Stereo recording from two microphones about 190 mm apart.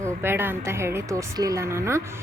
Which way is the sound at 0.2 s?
10° right (ahead or behind).